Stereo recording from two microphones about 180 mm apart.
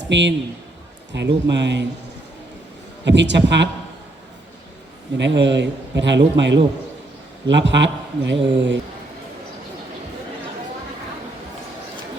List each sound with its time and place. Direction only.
0.1 s speech: 80° right
3.0 s speech: 75° right (ahead or behind)
5.1 s speech: 80° right